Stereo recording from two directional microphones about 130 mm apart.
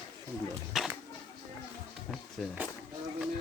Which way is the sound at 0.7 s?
Centre (ahead or behind).